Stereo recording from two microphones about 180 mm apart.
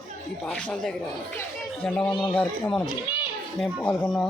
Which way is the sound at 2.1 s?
25° left (ahead or behind).